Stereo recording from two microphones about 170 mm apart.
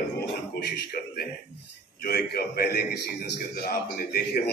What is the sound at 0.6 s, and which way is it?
A man's voice, 70° left (ahead or behind).